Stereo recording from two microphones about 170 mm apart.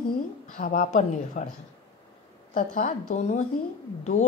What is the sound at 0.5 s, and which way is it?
Speech, 55° left (ahead or behind).